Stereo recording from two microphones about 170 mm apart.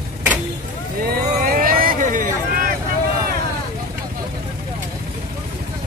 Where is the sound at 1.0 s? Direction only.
60° right (ahead or behind).